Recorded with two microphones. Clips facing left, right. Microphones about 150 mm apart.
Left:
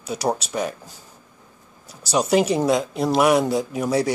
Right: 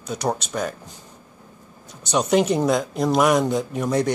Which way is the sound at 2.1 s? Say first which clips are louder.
Even; 5° left (ahead or behind).